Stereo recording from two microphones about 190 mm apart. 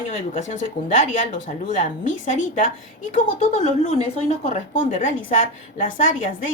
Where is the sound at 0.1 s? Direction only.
40° left (ahead or behind).